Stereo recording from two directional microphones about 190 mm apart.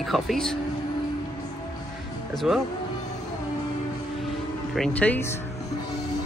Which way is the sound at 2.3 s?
Centre (ahead or behind).